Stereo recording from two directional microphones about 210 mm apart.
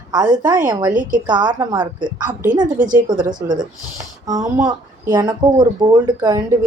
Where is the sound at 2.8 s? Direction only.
40° right (ahead or behind).